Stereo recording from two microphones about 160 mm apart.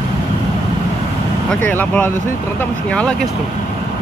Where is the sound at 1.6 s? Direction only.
10° left (ahead or behind).